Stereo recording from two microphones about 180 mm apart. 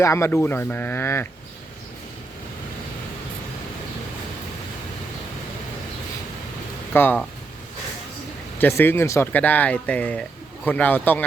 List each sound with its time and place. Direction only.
0.0 s speech: 15° left (ahead or behind)
6.9 s speech: 10° left (ahead or behind)
8.5 s speech: 10° left (ahead or behind)